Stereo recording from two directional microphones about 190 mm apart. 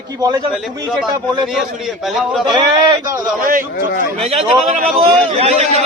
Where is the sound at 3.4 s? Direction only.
45° right (ahead or behind).